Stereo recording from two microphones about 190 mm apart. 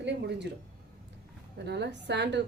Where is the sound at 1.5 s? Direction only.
65° right (ahead or behind).